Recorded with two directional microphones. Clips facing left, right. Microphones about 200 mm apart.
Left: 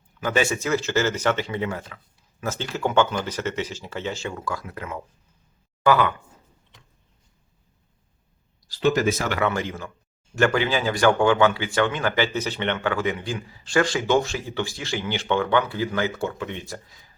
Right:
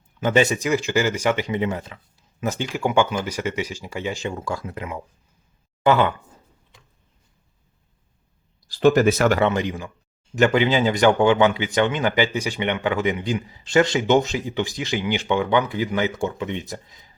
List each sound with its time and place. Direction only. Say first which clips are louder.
0.2 s speech: right 4 dB; 20° right (ahead or behind)
8.8 s speech: right 5 dB; 55° right (ahead or behind)
9.4 s speech: right 4 dB; 20° right (ahead or behind)